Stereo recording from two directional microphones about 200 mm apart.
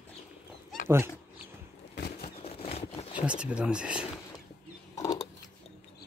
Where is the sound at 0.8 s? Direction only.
10° right (ahead or behind).